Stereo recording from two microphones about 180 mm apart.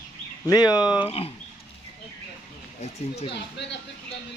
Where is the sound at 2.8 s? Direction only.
35° left (ahead or behind).